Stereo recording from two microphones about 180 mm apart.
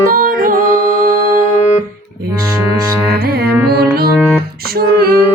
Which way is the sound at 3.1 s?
60° right (ahead or behind).